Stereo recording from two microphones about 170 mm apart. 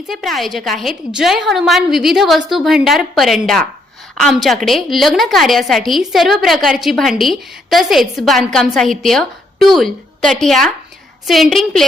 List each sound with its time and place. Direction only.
0.1 s a woman's voice: centre (ahead or behind)